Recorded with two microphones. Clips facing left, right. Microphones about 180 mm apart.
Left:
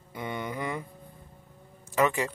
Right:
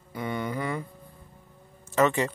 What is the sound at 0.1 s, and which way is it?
Mantra, 20° left (ahead or behind).